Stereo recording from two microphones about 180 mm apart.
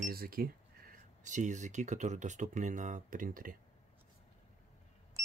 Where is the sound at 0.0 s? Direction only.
55° right (ahead or behind).